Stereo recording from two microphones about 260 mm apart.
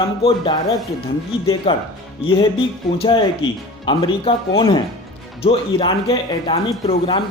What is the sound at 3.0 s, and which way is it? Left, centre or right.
Speech, centre.